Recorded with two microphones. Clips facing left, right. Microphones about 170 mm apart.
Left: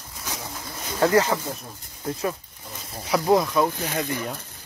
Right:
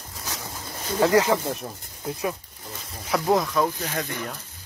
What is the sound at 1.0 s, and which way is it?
Speech, 15° right (ahead or behind).